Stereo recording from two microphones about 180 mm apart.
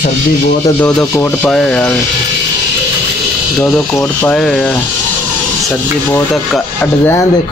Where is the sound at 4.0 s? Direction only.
10° left (ahead or behind).